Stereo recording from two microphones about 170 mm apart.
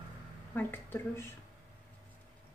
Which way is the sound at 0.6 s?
10° left (ahead or behind).